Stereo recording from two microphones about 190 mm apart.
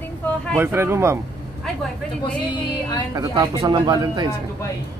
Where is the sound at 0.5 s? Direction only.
15° right (ahead or behind).